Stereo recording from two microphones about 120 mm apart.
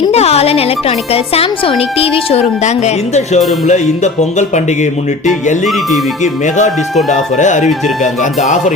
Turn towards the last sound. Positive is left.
turn(degrees=90)